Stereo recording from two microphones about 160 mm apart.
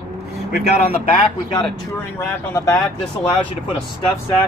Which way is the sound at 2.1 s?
15° left (ahead or behind).